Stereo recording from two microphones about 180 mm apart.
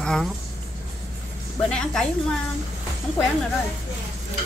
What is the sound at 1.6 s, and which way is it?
Speech, 5° left (ahead or behind).